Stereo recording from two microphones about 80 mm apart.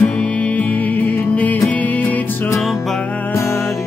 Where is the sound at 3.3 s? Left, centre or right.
Left.